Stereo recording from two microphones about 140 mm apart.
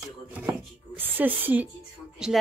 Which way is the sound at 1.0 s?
15° right (ahead or behind).